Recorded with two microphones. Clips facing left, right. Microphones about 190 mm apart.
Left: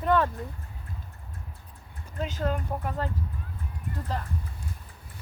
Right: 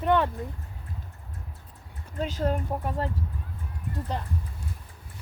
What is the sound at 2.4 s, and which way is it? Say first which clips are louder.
Speech: right 2 dB; 30° right (ahead or behind).